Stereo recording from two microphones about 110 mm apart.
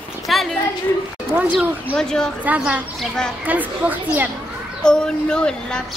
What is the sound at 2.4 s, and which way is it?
Speech, 15° right (ahead or behind).